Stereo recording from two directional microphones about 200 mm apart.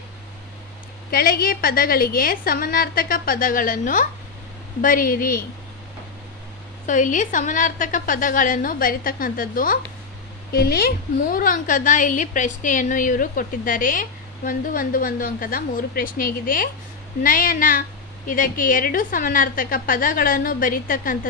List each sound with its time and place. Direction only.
1.1 s a woman's voice: 45° left (ahead or behind)
6.9 s a woman's voice: 40° left (ahead or behind)